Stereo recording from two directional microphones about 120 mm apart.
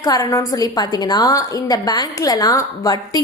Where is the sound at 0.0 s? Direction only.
30° left (ahead or behind).